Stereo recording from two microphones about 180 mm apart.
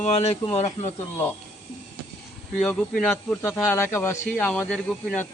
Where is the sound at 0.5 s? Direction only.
40° left (ahead or behind).